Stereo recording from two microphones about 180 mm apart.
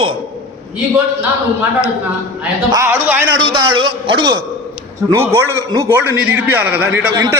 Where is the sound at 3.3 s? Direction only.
25° right (ahead or behind).